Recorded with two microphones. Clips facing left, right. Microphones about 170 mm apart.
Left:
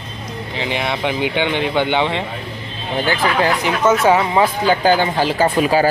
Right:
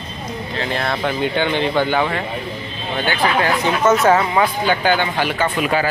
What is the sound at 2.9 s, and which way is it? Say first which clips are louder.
Speech: left 1 dB; 35° left (ahead or behind).